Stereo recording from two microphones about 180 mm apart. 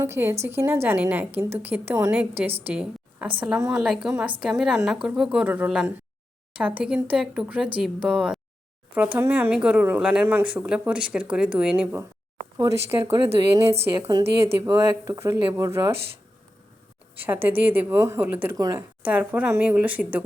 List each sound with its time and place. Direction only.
0.0 s speech: 15° right (ahead or behind)
2.6 s a sound: 10° right (ahead or behind)
3.3 s speech: 5° right (ahead or behind)
3.6 s speech: 15° right (ahead or behind)
3.8 s speech: 5° right (ahead or behind)
12.5 s speech: 15° right (ahead or behind)
17.2 s speech: 10° right (ahead or behind)
19.0 s speech: 10° right (ahead or behind)